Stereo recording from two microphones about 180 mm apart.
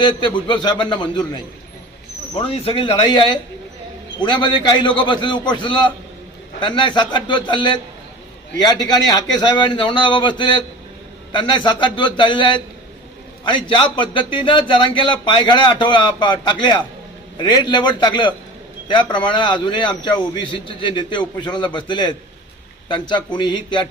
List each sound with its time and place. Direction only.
0.0 s a man's voice: 25° left (ahead or behind)
2.4 s a man's voice: 30° left (ahead or behind)
8.9 s a man's voice: 20° left (ahead or behind)